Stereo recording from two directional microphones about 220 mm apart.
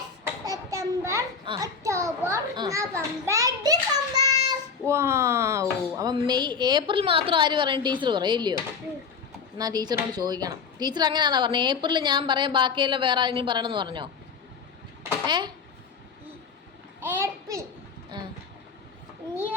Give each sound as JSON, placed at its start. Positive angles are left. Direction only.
{"t": 0.4, "sound": "a sound", "side_deg": -15}
{"t": 3.2, "sound": "a child's voice", "side_deg": -15}
{"t": 9.6, "sound": "speech", "side_deg": -15}
{"t": 15.3, "sound": "speech", "side_deg": -20}
{"t": 17.0, "sound": "a child's voice", "side_deg": -10}